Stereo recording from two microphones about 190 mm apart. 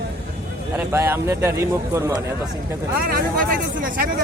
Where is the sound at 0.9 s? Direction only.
15° right (ahead or behind).